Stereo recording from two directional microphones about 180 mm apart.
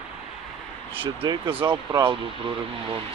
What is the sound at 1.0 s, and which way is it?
Speech, 30° right (ahead or behind).